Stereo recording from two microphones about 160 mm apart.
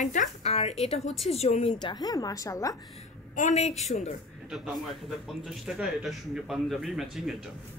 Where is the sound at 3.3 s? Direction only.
45° left (ahead or behind).